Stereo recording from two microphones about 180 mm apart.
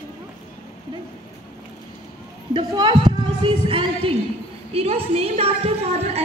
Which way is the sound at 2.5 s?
25° right (ahead or behind).